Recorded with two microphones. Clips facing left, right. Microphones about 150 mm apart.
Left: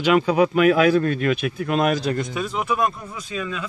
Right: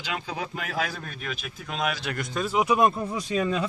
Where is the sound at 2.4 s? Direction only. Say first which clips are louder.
Right 3 dB; 10° right (ahead or behind).